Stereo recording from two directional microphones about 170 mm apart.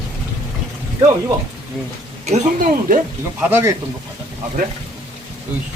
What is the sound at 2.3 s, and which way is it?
Speech, 50° right (ahead or behind).